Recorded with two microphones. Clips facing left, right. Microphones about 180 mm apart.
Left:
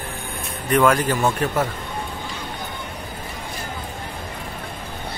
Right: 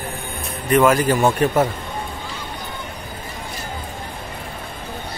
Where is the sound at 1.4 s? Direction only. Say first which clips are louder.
Right 5 dB; 20° right (ahead or behind).